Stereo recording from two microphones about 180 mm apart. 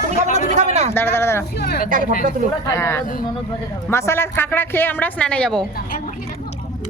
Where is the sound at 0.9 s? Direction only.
15° left (ahead or behind).